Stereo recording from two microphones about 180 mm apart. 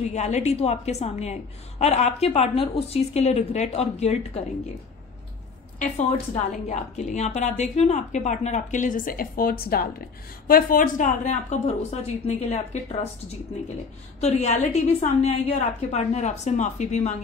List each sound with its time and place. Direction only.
0.0 s a woman's voice: 40° left (ahead or behind)
5.8 s a woman's voice: 40° left (ahead or behind)
14.2 s a woman's voice: 40° left (ahead or behind)